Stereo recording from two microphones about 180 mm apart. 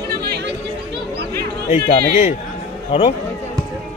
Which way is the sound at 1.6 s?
40° left (ahead or behind).